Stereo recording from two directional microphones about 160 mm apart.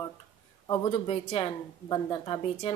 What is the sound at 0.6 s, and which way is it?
Speech, 25° left (ahead or behind).